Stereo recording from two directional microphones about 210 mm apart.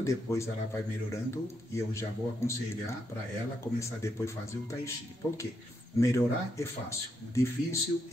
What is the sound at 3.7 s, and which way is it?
A man's voice, 15° left (ahead or behind).